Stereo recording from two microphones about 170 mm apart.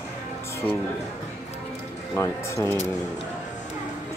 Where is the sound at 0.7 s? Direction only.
10° left (ahead or behind).